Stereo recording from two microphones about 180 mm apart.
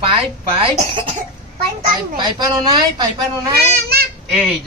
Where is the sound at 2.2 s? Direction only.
20° right (ahead or behind).